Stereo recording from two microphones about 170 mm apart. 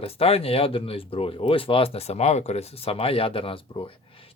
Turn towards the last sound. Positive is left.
turn(degrees=30)  # may be behind; listen again after turning